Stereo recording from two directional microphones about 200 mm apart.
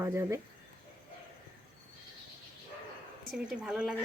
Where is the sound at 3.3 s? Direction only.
5° right (ahead or behind).